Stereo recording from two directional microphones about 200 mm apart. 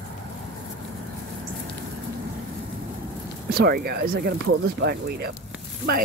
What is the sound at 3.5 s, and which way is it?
Speech, 50° right (ahead or behind).